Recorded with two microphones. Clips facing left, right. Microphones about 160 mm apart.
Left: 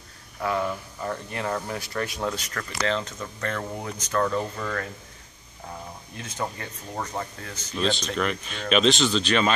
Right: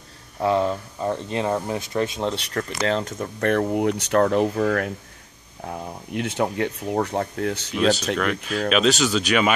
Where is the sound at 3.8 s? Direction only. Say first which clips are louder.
Right 7 dB; 70° right (ahead or behind).